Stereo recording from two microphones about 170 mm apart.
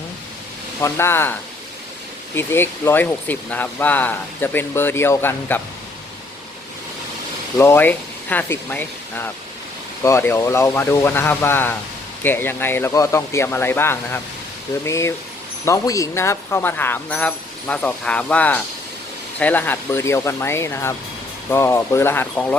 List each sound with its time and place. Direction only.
0.8 s speech: 15° left (ahead or behind)
7.6 s speech: 10° left (ahead or behind)